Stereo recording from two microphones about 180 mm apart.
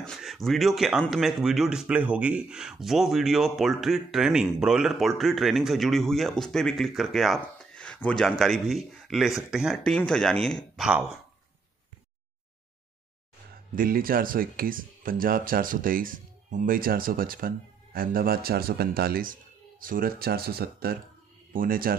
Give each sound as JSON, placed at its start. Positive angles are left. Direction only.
{"t": 0.0, "sound": "speech", "side_deg": 0}
{"t": 13.7, "sound": "speech", "side_deg": -55}